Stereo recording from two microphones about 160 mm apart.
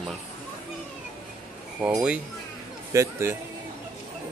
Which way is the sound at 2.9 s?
20° right (ahead or behind).